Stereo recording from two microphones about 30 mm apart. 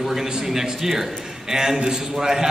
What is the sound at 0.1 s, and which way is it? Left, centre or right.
A man's voice, centre.